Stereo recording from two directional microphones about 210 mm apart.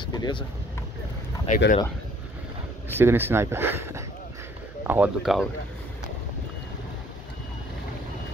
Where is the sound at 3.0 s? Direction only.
10° right (ahead or behind).